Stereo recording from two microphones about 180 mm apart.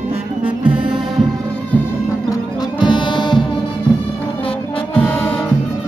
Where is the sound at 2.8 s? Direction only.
25° left (ahead or behind).